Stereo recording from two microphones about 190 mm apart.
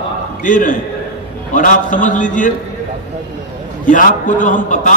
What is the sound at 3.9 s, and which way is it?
A man's voice, 45° left (ahead or behind).